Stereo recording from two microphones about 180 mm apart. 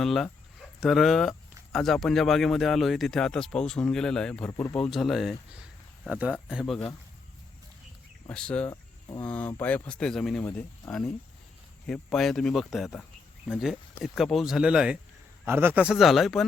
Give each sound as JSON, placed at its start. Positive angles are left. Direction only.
{"t": 0.0, "sound": "speech", "side_deg": 0}
{"t": 8.3, "sound": "speech", "side_deg": 5}
{"t": 8.7, "sound": "cricket", "side_deg": 20}
{"t": 9.2, "sound": "speech", "side_deg": 5}